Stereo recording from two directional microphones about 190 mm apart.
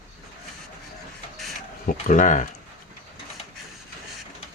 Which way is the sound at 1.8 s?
40° left (ahead or behind).